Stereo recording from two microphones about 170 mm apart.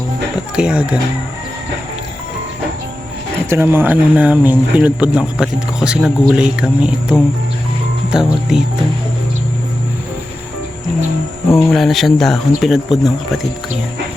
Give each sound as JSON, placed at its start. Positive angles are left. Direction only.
{"t": 0.5, "sound": "speech", "side_deg": -5}
{"t": 3.5, "sound": "speech", "side_deg": -10}
{"t": 11.7, "sound": "speech", "side_deg": 0}